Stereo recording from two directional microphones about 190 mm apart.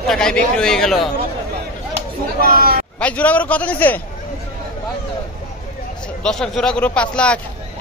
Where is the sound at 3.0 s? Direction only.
5° left (ahead or behind).